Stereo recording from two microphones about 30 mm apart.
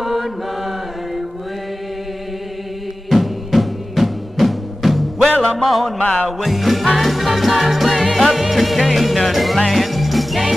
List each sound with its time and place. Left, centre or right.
0.0 s chant: centre
3.1 s music: centre
5.9 s music: left
6.4 s music: centre